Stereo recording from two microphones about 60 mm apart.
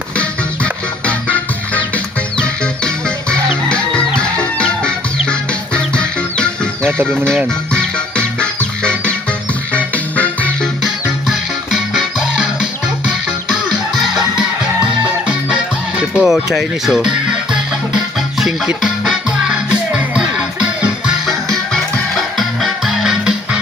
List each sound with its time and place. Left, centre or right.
0.2 s music: left
7.7 s music: centre
11.3 s music: centre
16.0 s speech: centre
18.3 s music: centre
21.2 s music: centre